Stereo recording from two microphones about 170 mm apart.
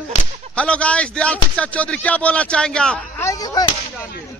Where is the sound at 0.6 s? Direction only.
5° left (ahead or behind).